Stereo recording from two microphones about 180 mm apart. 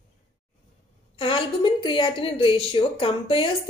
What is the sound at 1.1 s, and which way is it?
A woman's voice, 30° left (ahead or behind).